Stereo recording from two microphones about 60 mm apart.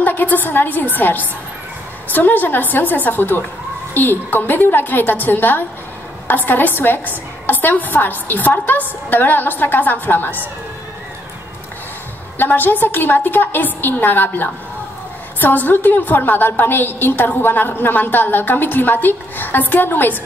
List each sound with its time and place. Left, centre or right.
0.0 s a woman's voice: left
12.4 s a woman's voice: left